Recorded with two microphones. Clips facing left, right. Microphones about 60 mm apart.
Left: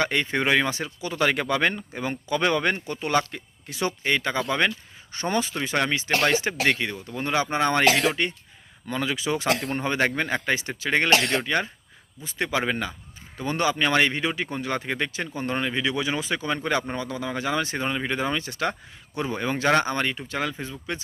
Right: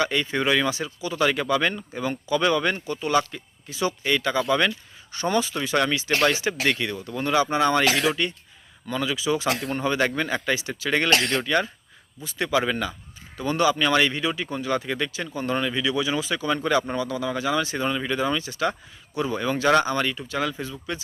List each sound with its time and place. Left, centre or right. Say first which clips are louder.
0.0 s speech: even; left